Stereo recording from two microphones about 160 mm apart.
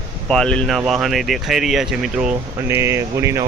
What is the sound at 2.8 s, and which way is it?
Speech, 15° right (ahead or behind).